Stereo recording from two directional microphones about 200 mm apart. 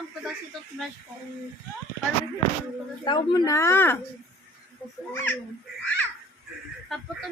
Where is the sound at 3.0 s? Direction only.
25° left (ahead or behind).